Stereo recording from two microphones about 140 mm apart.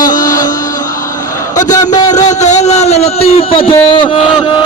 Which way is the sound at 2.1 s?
55° left (ahead or behind).